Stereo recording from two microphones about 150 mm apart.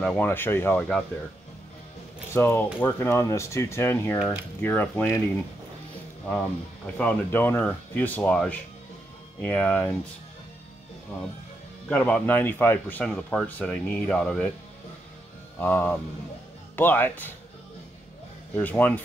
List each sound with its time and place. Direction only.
0.0 s speech: 10° left (ahead or behind)
2.3 s speech: 15° left (ahead or behind)
4.2 s speech: 10° right (ahead or behind)
4.6 s speech: 10° left (ahead or behind)
7.0 s speech: 10° left (ahead or behind)
11.9 s speech: 10° left (ahead or behind)
15.5 s speech: 10° left (ahead or behind)
18.6 s speech: 10° left (ahead or behind)